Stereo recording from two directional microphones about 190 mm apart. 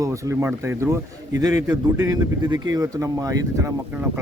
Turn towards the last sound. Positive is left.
turn(degrees=-15)  # may be behind; listen again after turning